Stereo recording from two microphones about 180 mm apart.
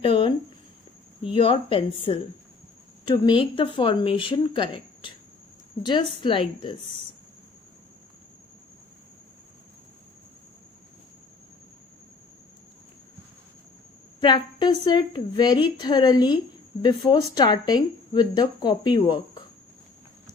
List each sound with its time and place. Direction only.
0.0 s a sound: 30° left (ahead or behind)
1.3 s speech: 30° left (ahead or behind)
14.2 s speech: 25° left (ahead or behind)